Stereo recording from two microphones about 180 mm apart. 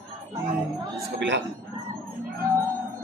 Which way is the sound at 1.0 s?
75° right (ahead or behind).